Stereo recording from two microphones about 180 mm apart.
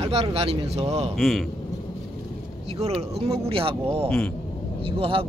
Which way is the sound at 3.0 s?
35° right (ahead or behind).